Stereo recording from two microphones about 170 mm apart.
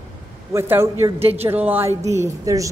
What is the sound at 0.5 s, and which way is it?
A woman's voice, 15° right (ahead or behind).